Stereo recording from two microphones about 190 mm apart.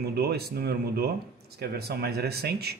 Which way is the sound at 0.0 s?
55° right (ahead or behind).